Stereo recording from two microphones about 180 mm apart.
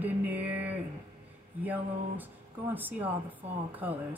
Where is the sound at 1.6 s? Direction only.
10° right (ahead or behind).